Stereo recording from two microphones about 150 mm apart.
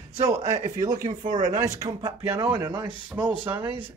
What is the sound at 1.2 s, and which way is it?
Speech, 55° right (ahead or behind).